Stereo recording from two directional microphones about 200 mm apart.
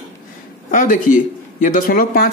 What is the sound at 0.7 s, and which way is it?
Speech, 40° left (ahead or behind).